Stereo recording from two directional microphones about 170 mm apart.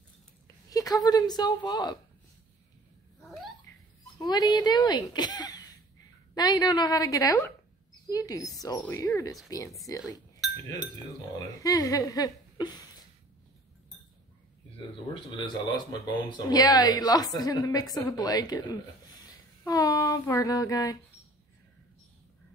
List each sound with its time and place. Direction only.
0.7 s speech: 20° left (ahead or behind)
3.2 s giggle: centre (ahead or behind)
4.2 s speech: 25° left (ahead or behind)
11.3 s speech: 20° left (ahead or behind)
15.1 s speech: 25° left (ahead or behind)
19.2 s a sound: 20° left (ahead or behind)